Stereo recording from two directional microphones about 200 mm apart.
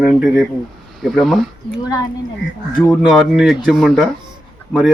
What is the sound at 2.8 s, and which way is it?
Speech, centre (ahead or behind).